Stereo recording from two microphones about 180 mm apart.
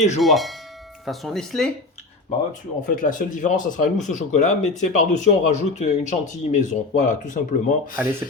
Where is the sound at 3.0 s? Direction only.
45° left (ahead or behind).